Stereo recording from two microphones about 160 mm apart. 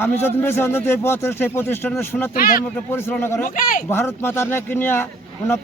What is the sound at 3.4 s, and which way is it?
Speech, 55° left (ahead or behind).